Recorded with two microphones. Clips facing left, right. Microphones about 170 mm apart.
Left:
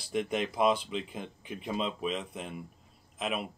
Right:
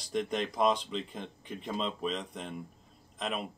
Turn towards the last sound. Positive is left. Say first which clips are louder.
# left 2 dB
turn(degrees=5)  # may be behind; listen again after turning